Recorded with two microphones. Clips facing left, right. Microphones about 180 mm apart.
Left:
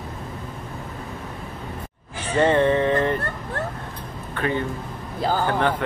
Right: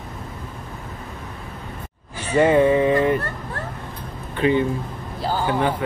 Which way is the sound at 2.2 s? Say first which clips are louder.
Right 3 dB; 10° right (ahead or behind).